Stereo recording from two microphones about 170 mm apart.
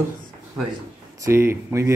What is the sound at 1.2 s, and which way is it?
Speech, 15° right (ahead or behind).